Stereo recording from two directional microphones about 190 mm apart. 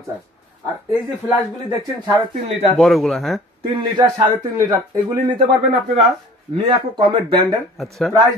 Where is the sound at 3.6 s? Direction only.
20° right (ahead or behind).